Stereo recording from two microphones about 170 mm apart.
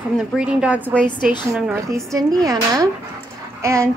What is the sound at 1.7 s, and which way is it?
A woman's voice, 15° right (ahead or behind).